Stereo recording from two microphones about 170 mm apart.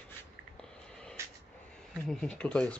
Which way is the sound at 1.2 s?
15° right (ahead or behind).